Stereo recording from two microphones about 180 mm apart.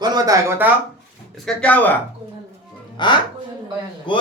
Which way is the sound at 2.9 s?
25° left (ahead or behind).